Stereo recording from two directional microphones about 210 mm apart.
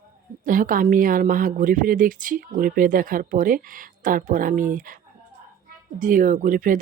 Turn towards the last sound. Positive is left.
turn(degrees=-40)  # may be behind; listen again after turning